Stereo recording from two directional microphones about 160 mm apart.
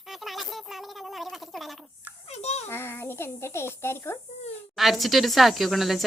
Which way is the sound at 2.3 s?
40° left (ahead or behind).